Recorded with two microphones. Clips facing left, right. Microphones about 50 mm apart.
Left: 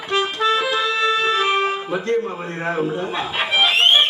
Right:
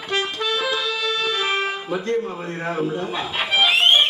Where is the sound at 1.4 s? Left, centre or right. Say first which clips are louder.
Left 4 dB; centre.